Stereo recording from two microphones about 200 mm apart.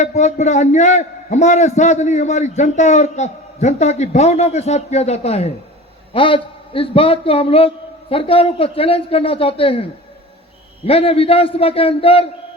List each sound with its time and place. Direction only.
0.0 s a man's voice: 35° left (ahead or behind)
10.8 s a man's voice: 30° left (ahead or behind)